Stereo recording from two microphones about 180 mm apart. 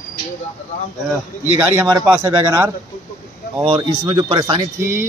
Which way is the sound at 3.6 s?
25° right (ahead or behind).